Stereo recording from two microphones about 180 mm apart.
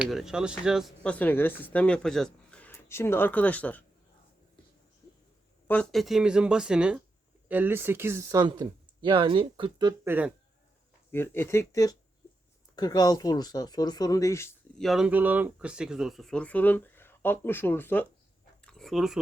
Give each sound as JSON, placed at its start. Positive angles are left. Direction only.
{"t": 0.0, "sound": "speech", "side_deg": 0}
{"t": 5.6, "sound": "speech", "side_deg": 5}
{"t": 10.1, "sound": "speech", "side_deg": -10}
{"t": 11.1, "sound": "speech", "side_deg": 15}
{"t": 14.8, "sound": "speech", "side_deg": 0}
{"t": 18.6, "sound": "a sound", "side_deg": 5}